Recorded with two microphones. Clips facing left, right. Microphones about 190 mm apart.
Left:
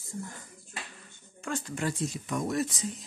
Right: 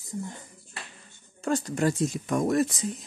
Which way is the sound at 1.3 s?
40° right (ahead or behind).